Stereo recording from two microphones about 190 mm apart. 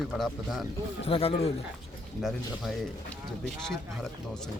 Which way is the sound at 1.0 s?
30° left (ahead or behind).